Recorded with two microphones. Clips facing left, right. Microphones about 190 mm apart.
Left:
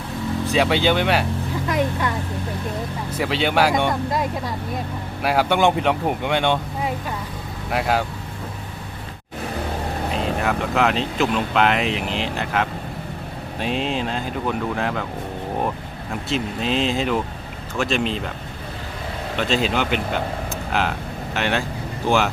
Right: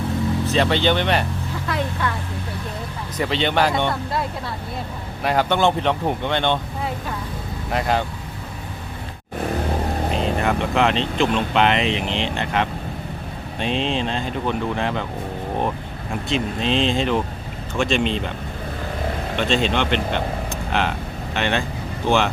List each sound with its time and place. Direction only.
0.4 s speech: 10° left (ahead or behind)
1.6 s vehicle: 15° left (ahead or behind)
3.2 s speech: 5° left (ahead or behind)
10.2 s speech: centre (ahead or behind)
16.3 s speech: 5° left (ahead or behind)
19.4 s speech: 5° left (ahead or behind)